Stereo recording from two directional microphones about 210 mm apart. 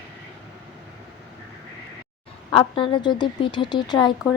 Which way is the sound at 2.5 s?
25° left (ahead or behind).